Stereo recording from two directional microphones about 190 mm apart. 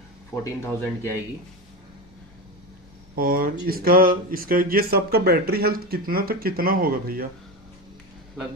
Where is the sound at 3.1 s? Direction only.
50° right (ahead or behind).